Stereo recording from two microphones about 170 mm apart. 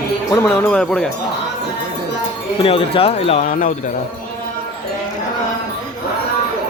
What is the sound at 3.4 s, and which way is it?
Speech, 50° left (ahead or behind).